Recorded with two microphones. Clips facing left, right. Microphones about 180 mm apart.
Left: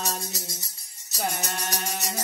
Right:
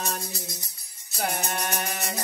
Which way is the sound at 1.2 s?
60° right (ahead or behind).